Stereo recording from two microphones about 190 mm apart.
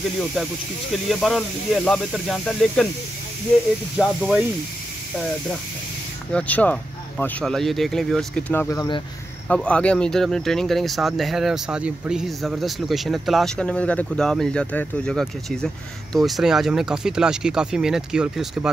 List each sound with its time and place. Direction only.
1.0 s speech: centre (ahead or behind)
4.0 s speech: centre (ahead or behind)
6.3 s speech: 10° left (ahead or behind)
8.5 s speech: 15° left (ahead or behind)
9.5 s speech: 5° left (ahead or behind)